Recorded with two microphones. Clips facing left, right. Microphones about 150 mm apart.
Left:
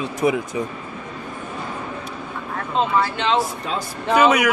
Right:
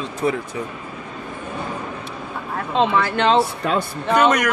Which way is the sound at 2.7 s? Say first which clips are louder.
Right 2 dB; 65° right (ahead or behind).